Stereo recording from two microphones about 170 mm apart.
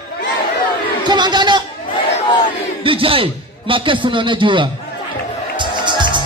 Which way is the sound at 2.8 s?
30° right (ahead or behind).